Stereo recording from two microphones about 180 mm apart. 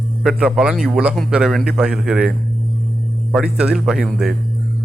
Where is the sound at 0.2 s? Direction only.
5° right (ahead or behind).